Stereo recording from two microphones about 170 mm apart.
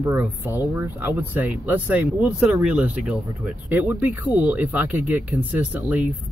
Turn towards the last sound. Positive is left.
turn(degrees=-10)  # may be behind; listen again after turning